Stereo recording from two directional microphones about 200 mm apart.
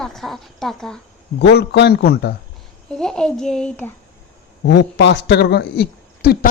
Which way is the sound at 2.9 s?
5° left (ahead or behind).